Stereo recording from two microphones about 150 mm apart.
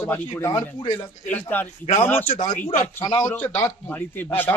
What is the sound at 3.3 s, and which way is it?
A man's voice, 10° left (ahead or behind).